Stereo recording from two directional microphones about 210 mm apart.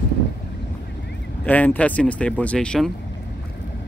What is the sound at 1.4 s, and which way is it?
Speech, 5° left (ahead or behind).